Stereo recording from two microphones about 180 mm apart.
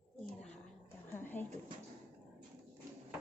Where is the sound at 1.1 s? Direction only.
10° left (ahead or behind).